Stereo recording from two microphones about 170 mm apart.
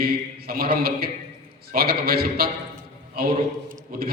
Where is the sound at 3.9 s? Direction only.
60° right (ahead or behind).